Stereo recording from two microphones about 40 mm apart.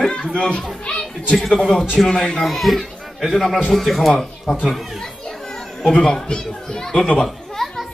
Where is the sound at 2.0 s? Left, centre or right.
Centre.